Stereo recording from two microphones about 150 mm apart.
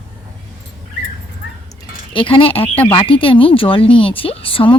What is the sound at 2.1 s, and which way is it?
Speech, 35° left (ahead or behind).